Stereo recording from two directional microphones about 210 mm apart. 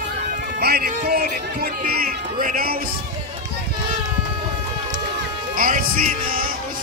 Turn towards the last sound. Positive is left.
turn(degrees=-45)  # may be behind; listen again after turning